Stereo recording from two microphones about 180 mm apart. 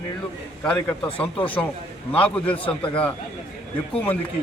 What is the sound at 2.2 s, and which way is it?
Speech, 10° left (ahead or behind).